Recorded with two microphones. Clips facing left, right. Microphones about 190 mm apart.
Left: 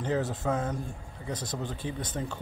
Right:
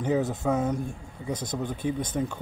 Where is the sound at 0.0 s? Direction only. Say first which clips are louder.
Right 4 dB; 15° right (ahead or behind).